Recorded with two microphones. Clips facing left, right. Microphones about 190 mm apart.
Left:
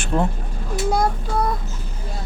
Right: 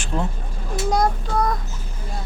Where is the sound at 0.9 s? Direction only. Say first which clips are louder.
Right 1 dB; 5° left (ahead or behind).